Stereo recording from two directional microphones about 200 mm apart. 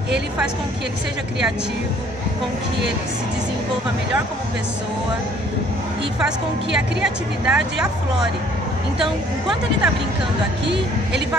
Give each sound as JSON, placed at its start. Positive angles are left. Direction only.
{"t": 6.2, "sound": "a woman's voice", "side_deg": -5}